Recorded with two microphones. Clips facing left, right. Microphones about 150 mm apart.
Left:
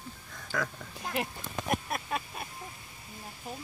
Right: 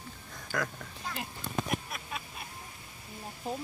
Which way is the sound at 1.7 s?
50° left (ahead or behind).